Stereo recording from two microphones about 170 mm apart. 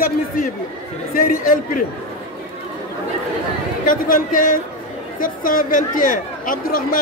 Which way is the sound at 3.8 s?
50° left (ahead or behind).